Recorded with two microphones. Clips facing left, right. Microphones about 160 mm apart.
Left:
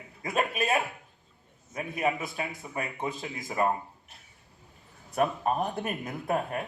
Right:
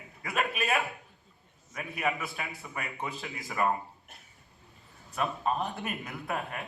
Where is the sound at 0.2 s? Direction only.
25° left (ahead or behind).